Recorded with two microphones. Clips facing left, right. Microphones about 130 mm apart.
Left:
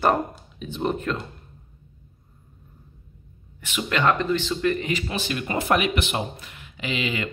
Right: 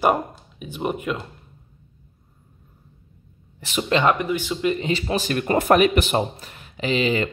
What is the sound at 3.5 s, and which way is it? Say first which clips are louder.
Speech: right 5 dB; 35° right (ahead or behind).